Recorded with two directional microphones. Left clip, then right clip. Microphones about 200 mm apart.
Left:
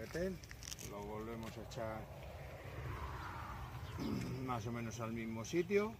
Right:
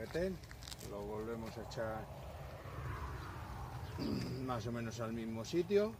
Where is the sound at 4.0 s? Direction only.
15° left (ahead or behind).